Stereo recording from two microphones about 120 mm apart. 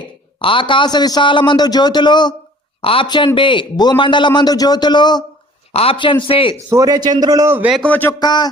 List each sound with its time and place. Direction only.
0.3 s a man's voice: 45° left (ahead or behind)
5.7 s a man's voice: 50° left (ahead or behind)
6.7 s a man's voice: 30° right (ahead or behind)
7.9 s speech: 15° left (ahead or behind)
8.2 s a man's voice: 35° left (ahead or behind)